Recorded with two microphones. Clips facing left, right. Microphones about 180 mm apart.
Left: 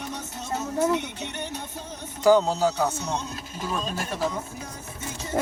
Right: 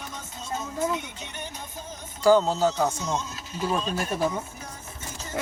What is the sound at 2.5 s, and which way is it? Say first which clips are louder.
Speech: even; 10° left (ahead or behind).